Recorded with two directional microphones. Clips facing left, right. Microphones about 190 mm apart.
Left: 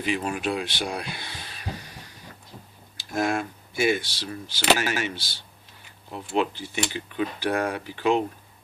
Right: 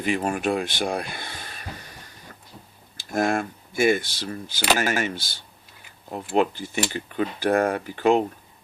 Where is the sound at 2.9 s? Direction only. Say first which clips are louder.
Right 2 dB; 50° right (ahead or behind).